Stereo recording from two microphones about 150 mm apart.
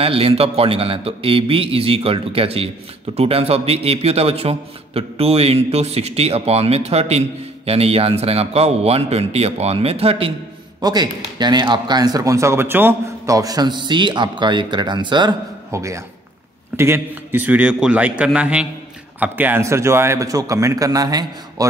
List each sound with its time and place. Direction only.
0.0 s a man's voice: 40° right (ahead or behind)
10.8 s a man's voice: 25° right (ahead or behind)